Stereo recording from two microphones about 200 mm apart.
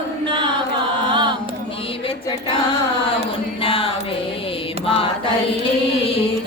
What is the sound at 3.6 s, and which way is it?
Music, 25° left (ahead or behind).